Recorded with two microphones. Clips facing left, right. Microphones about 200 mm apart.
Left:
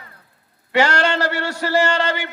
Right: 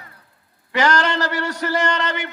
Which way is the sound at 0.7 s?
30° left (ahead or behind).